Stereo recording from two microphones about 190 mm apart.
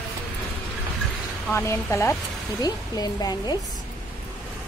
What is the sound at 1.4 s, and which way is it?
A woman's voice, 15° left (ahead or behind).